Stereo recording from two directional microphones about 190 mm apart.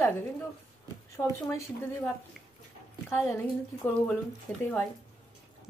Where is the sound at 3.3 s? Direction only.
10° left (ahead or behind).